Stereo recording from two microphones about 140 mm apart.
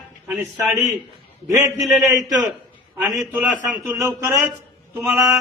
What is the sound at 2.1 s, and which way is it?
Speech, 25° right (ahead or behind).